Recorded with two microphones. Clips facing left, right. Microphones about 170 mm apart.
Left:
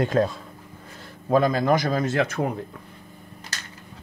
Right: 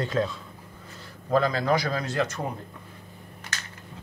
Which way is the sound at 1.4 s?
50° left (ahead or behind).